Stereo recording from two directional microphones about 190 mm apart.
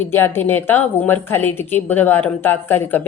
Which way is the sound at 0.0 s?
10° left (ahead or behind).